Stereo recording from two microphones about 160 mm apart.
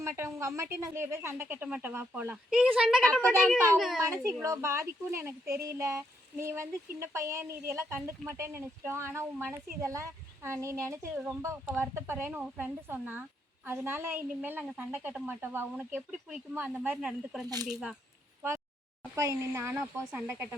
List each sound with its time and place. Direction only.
0.0 s a child's voice: 20° right (ahead or behind)
3.1 s a child's voice: 5° left (ahead or behind)
4.1 s a child's voice: 20° right (ahead or behind); by 17.9 s 5° right (ahead or behind)
19.1 s speech: 20° right (ahead or behind)